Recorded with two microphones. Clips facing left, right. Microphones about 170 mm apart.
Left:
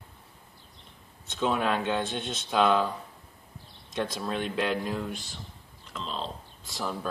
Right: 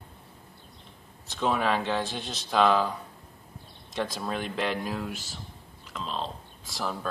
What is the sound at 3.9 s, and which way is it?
Speech, centre (ahead or behind).